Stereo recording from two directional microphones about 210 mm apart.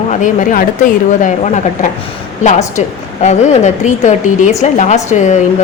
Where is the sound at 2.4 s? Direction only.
35° left (ahead or behind).